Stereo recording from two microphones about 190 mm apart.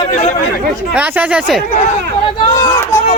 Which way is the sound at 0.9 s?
10° right (ahead or behind).